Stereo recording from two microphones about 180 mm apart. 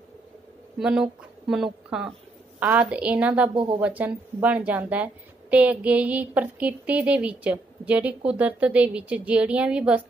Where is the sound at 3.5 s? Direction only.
30° right (ahead or behind).